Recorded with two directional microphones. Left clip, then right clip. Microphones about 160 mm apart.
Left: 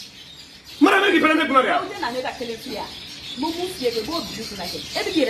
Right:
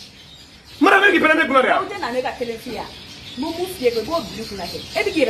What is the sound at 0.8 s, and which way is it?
Speech, 5° left (ahead or behind).